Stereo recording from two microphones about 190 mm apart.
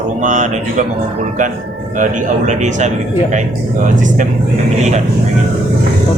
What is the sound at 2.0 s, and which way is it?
Speech, 40° right (ahead or behind).